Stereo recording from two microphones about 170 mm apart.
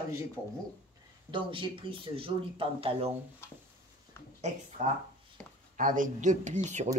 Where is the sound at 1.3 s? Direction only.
30° right (ahead or behind).